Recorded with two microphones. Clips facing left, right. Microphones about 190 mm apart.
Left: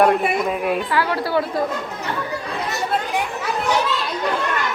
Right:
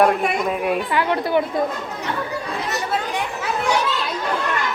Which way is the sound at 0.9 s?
20° right (ahead or behind).